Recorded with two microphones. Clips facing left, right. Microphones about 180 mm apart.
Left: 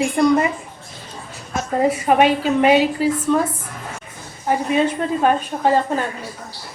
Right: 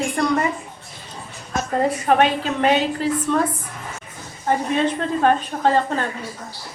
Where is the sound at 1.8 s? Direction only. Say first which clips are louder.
Left 2 dB; 10° left (ahead or behind).